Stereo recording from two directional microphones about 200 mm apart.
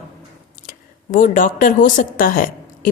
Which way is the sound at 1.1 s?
40° left (ahead or behind).